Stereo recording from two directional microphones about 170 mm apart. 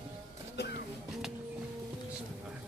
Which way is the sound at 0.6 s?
75° left (ahead or behind).